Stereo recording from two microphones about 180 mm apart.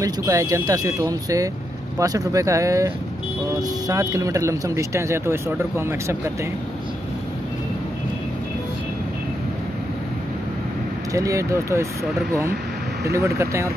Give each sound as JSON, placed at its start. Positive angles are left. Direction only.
{"t": 0.0, "sound": "speech", "side_deg": -20}
{"t": 11.1, "sound": "speech", "side_deg": -15}
{"t": 13.0, "sound": "speech", "side_deg": -15}